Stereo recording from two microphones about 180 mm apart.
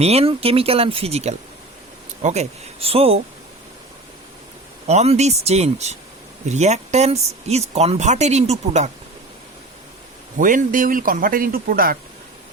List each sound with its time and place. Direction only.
0.0 s speech: 35° right (ahead or behind)
4.9 s speech: 40° right (ahead or behind)
10.3 s speech: 45° right (ahead or behind)